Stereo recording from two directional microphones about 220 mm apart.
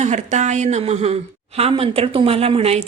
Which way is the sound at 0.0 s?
30° right (ahead or behind).